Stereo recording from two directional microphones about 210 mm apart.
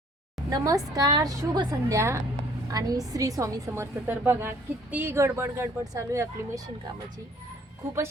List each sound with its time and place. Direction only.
0.5 s a woman's voice: 15° right (ahead or behind)